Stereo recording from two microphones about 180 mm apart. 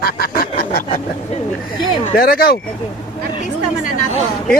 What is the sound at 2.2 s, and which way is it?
Speech, 60° left (ahead or behind).